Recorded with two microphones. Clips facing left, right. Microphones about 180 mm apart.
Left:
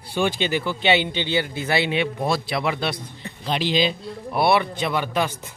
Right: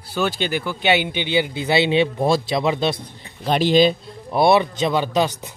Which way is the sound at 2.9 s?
50° right (ahead or behind).